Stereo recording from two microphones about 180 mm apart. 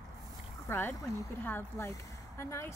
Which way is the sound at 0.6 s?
10° left (ahead or behind).